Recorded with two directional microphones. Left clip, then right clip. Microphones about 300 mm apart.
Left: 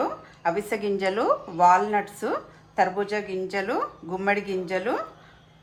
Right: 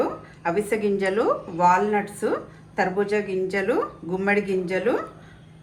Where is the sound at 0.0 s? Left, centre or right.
Left.